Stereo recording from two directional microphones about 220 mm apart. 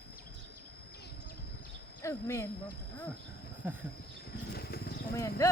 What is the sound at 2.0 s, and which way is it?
Speech, 15° left (ahead or behind).